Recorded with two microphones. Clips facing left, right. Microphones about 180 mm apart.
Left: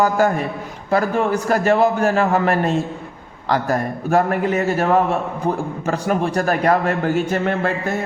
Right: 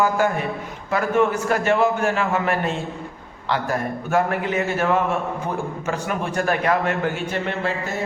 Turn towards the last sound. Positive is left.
turn(degrees=45)  # may be behind; listen again after turning